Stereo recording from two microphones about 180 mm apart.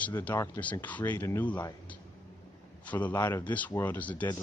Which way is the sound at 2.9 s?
10° left (ahead or behind).